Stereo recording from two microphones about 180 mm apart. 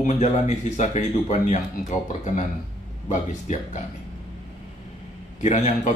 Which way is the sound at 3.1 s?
40° left (ahead or behind).